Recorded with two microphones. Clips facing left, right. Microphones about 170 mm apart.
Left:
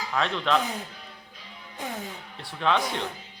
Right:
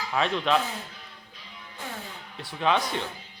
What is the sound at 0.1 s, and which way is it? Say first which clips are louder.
Speech: right 1 dB; 5° right (ahead or behind).